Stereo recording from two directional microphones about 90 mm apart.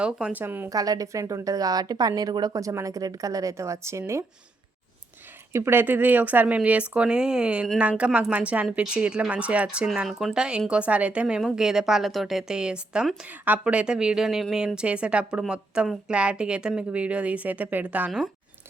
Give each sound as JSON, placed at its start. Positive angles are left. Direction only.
{"t": 0.0, "sound": "a woman's voice", "side_deg": -10}
{"t": 0.4, "sound": "a woman's voice", "side_deg": -25}
{"t": 0.7, "sound": "a woman's voice", "side_deg": -45}
{"t": 5.5, "sound": "a woman's voice", "side_deg": -25}